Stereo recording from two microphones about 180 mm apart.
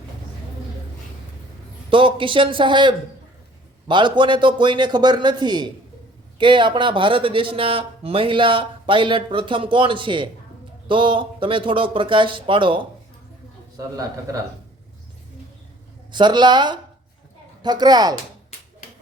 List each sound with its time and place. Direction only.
1.9 s speech: 30° right (ahead or behind)
16.1 s speech: 25° right (ahead or behind)